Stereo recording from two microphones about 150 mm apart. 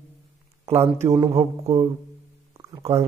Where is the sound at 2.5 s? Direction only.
20° right (ahead or behind).